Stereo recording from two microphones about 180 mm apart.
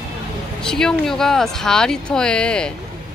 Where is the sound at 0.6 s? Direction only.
5° left (ahead or behind).